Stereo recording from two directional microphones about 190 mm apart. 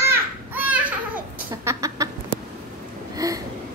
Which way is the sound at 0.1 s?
10° right (ahead or behind).